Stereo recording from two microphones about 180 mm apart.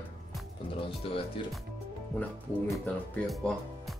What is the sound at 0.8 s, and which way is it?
Speech, 30° left (ahead or behind).